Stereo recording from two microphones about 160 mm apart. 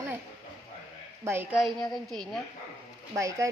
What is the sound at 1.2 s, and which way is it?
Speech, 15° right (ahead or behind).